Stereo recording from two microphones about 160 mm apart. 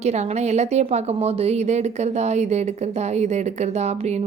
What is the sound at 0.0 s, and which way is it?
A woman's voice, 45° right (ahead or behind).